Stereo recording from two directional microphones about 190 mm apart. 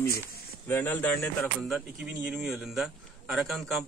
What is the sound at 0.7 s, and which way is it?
A man's voice, 10° left (ahead or behind).